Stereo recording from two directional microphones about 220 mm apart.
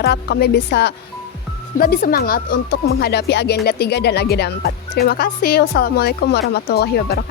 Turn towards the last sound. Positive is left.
turn(degrees=45)  # may be behind; listen again after turning